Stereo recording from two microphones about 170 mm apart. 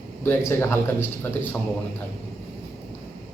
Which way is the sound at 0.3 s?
15° left (ahead or behind).